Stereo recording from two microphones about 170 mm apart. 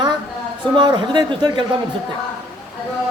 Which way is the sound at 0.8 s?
25° right (ahead or behind).